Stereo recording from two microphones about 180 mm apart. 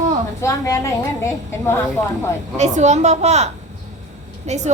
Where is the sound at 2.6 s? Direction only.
40° right (ahead or behind).